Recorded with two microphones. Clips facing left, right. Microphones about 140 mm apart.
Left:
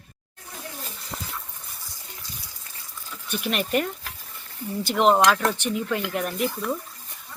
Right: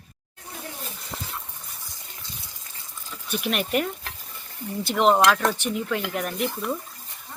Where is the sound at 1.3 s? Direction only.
20° right (ahead or behind).